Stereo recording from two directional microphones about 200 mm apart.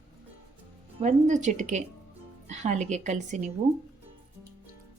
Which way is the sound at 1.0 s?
35° right (ahead or behind).